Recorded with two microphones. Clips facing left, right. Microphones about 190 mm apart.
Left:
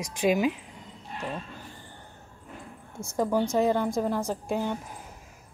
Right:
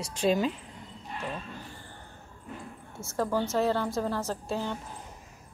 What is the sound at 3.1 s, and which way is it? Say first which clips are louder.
A woman's voice: left 3 dB; 15° left (ahead or behind).